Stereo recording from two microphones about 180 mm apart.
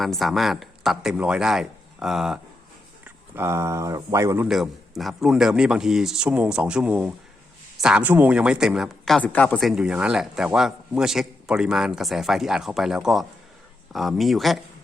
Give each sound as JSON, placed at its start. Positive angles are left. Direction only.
{"t": 0.0, "sound": "speech", "side_deg": 0}
{"t": 4.4, "sound": "speech", "side_deg": -5}